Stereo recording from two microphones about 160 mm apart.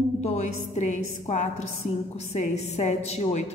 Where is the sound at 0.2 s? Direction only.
45° left (ahead or behind).